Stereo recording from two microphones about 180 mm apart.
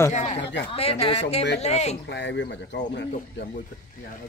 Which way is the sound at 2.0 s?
75° left (ahead or behind).